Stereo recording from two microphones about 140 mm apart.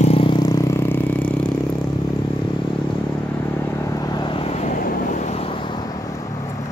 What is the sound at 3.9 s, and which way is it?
Vehicle, 25° left (ahead or behind).